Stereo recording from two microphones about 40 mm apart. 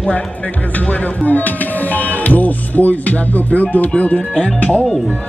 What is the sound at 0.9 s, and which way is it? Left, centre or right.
Speech, left.